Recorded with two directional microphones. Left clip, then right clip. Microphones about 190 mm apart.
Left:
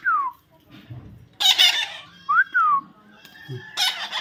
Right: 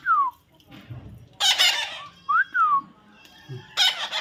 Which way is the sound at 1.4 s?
5° right (ahead or behind).